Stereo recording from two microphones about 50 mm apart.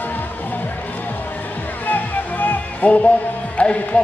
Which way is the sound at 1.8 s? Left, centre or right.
Left.